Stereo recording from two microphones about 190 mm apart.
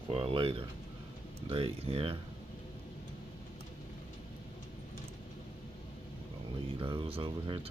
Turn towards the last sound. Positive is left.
turn(degrees=-25)  # may be behind; listen again after turning